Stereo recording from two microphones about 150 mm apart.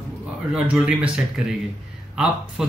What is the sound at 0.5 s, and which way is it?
Speech, 5° right (ahead or behind).